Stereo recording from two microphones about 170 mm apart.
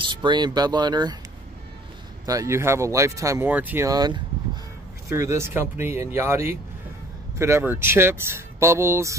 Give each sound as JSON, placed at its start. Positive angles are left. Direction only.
{"t": 0.0, "sound": "speech", "side_deg": -25}
{"t": 2.2, "sound": "speech", "side_deg": -20}